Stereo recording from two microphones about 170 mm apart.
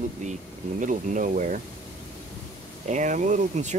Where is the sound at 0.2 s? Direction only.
45° right (ahead or behind).